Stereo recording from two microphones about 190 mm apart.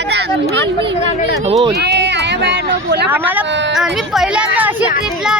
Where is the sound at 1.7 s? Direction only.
65° right (ahead or behind).